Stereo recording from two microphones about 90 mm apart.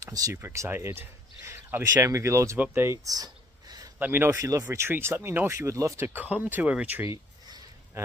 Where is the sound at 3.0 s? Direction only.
45° right (ahead or behind).